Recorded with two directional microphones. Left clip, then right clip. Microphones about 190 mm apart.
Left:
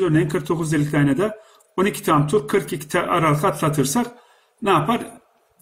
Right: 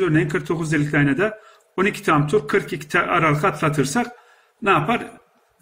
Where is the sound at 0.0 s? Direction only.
Centre (ahead or behind).